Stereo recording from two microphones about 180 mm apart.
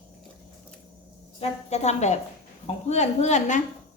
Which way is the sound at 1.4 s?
40° left (ahead or behind).